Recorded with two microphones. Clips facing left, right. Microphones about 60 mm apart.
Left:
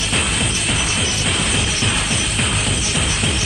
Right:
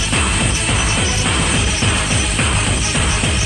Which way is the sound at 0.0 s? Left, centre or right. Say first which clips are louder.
Right 2 dB; centre.